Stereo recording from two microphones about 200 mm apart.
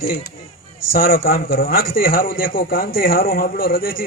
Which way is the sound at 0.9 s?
45° left (ahead or behind).